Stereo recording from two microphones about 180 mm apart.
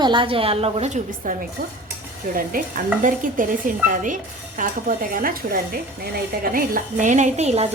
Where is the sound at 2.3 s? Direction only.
50° right (ahead or behind).